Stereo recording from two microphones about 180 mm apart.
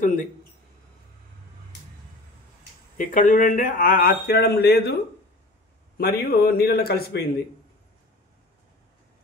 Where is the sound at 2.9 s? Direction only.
45° left (ahead or behind); by 5.0 s 65° left (ahead or behind).